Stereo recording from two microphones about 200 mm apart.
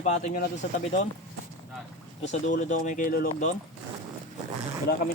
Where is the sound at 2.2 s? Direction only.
40° left (ahead or behind).